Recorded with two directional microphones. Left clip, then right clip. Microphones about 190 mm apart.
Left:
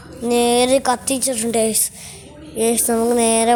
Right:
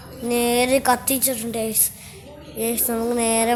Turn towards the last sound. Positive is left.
turn(degrees=30)  # may be behind; listen again after turning